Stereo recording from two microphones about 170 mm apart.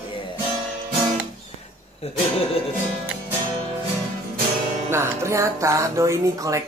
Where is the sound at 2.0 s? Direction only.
40° left (ahead or behind).